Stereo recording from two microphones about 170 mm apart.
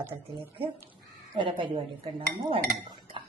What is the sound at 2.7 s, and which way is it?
Chink, 30° right (ahead or behind).